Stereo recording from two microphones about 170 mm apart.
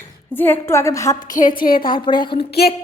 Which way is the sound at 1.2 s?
50° left (ahead or behind).